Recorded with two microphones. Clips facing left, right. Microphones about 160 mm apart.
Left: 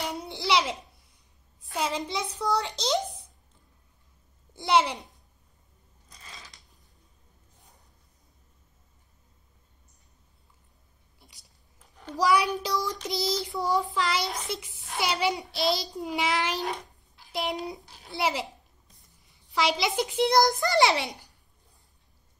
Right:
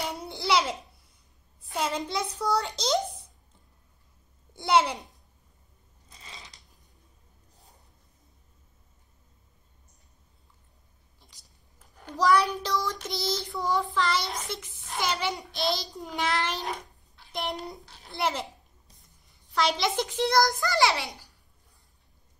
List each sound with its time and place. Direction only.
0.1 s babbling: centre (ahead or behind)
1.6 s a child's voice: centre (ahead or behind)
4.6 s child singing: centre (ahead or behind)
6.0 s a sound: 20° right (ahead or behind)
11.1 s a sound: 15° left (ahead or behind)
12.2 s child singing: centre (ahead or behind)
16.1 s a child's voice: 10° left (ahead or behind)
18.0 s child singing: centre (ahead or behind)
19.2 s a child's voice: 5° left (ahead or behind); by 21.3 s 20° left (ahead or behind)